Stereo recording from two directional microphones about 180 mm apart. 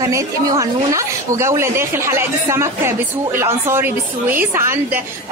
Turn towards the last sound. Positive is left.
turn(degrees=-15)  # may be behind; listen again after turning